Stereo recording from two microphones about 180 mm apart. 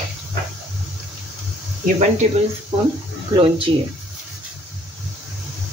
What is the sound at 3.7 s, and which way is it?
Speech, 30° right (ahead or behind).